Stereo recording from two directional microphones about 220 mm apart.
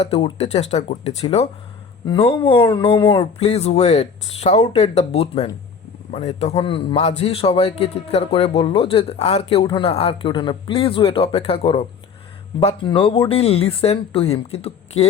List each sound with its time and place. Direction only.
0.0 s a man's voice: 25° left (ahead or behind)